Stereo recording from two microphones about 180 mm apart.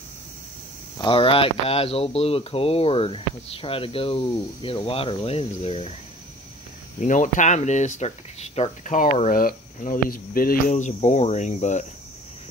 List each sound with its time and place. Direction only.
0.9 s speech: 30° left (ahead or behind)
7.0 s speech: 45° left (ahead or behind)